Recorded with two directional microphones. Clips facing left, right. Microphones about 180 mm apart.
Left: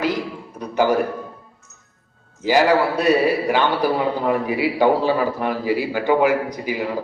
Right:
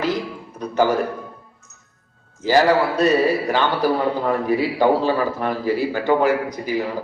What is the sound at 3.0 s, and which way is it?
A man's voice, 10° left (ahead or behind).